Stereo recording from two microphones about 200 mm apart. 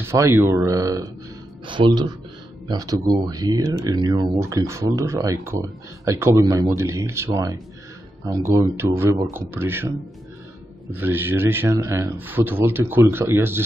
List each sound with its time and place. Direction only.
0.0 s a man's voice: 15° right (ahead or behind)
8.3 s speech: 15° right (ahead or behind)
10.9 s speech: 10° right (ahead or behind)